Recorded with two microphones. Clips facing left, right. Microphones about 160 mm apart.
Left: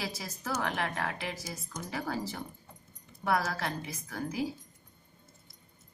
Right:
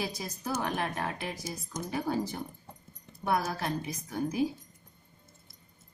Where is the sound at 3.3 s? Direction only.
20° right (ahead or behind).